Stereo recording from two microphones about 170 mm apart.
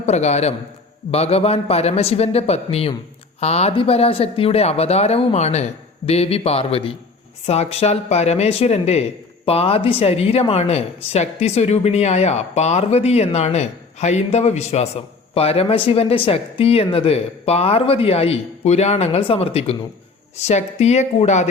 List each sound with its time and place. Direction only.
0.0 s speech: 40° left (ahead or behind)